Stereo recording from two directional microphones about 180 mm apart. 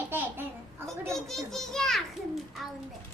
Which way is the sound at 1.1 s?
Centre (ahead or behind).